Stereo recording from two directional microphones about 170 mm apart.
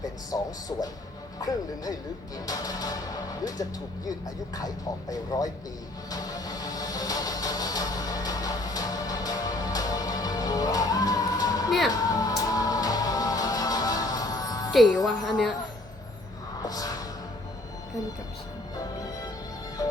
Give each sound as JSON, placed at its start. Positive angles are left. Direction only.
{"t": 0.3, "sound": "speech", "side_deg": 20}
{"t": 6.1, "sound": "music", "side_deg": 20}
{"t": 14.7, "sound": "speech", "side_deg": 0}
{"t": 16.6, "sound": "music", "side_deg": 20}